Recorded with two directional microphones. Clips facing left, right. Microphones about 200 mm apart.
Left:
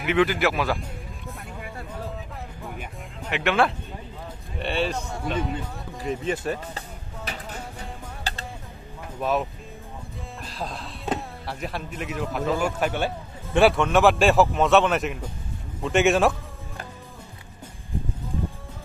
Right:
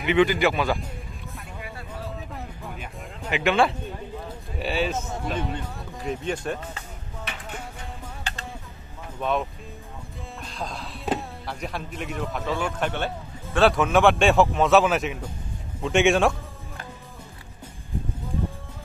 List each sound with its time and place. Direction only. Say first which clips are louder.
0.0 s a man's voice: right 1 dB; centre (ahead or behind)
2.3 s music: even; centre (ahead or behind)
4.6 s a man's voice: even; centre (ahead or behind)
8.2 s music: left 3 dB; 35° left (ahead or behind)
9.2 s a man's voice: left 1 dB; 5° left (ahead or behind)
13.7 s a man's voice: even; centre (ahead or behind)